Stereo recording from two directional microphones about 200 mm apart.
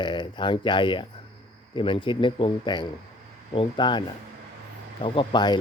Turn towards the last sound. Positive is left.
turn(degrees=20)  # may be behind; listen again after turning